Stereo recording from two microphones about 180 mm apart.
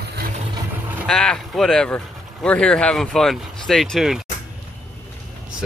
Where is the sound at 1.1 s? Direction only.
5° left (ahead or behind).